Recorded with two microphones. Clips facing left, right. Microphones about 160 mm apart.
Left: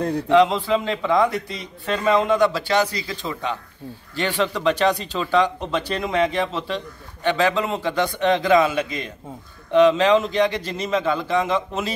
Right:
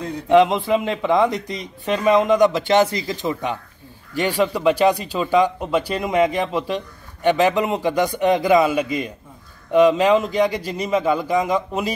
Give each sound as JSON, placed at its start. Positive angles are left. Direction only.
{"t": 0.3, "sound": "a man's voice", "side_deg": -20}